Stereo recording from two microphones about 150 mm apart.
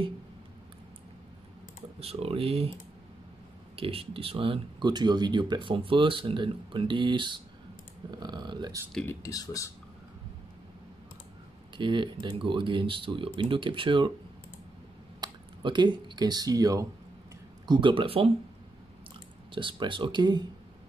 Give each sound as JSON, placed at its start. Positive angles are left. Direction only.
{"t": 2.0, "sound": "speech", "side_deg": -40}
{"t": 3.7, "sound": "speech", "side_deg": -40}
{"t": 9.0, "sound": "speech", "side_deg": 15}
{"t": 11.7, "sound": "speech", "side_deg": -30}
{"t": 15.1, "sound": "speech", "side_deg": -30}
{"t": 19.5, "sound": "speech", "side_deg": -35}